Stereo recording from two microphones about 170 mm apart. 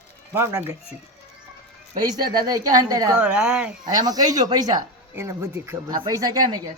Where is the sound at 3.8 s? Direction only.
25° right (ahead or behind).